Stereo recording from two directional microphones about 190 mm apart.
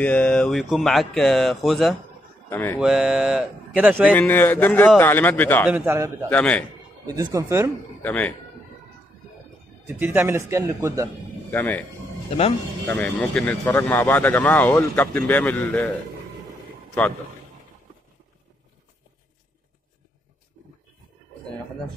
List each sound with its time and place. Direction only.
0.0 s speech: 5° left (ahead or behind)
2.8 s speech: 5° right (ahead or behind)
4.1 s speech: 10° left (ahead or behind)
5.7 s a man's voice: 10° right (ahead or behind)
6.2 s speech: 5° left (ahead or behind)
7.1 s a man's voice: 15° right (ahead or behind)
8.0 s a man's voice: 10° left (ahead or behind)
9.8 s a man's voice: 10° right (ahead or behind)
11.5 s speech: 10° left (ahead or behind)
12.8 s speech: 10° left (ahead or behind)